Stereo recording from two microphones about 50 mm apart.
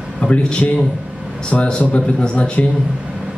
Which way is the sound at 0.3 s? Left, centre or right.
Left.